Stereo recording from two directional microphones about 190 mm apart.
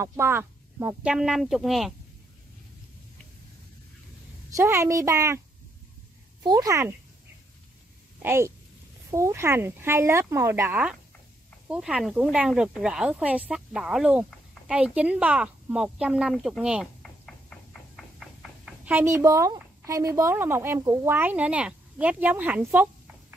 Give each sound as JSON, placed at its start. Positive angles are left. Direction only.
{"t": 0.0, "sound": "speech", "side_deg": -15}
{"t": 4.5, "sound": "speech", "side_deg": -15}
{"t": 6.4, "sound": "speech", "side_deg": -20}
{"t": 8.2, "sound": "a woman's voice", "side_deg": -15}